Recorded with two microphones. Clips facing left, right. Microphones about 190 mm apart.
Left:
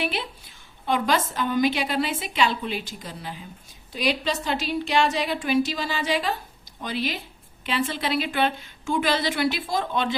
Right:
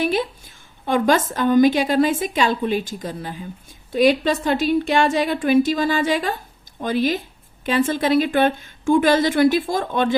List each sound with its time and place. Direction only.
0.0 s a woman's voice: 45° right (ahead or behind)